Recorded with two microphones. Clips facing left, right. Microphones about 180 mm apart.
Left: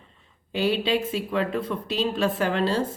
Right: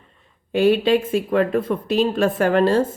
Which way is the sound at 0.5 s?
50° right (ahead or behind).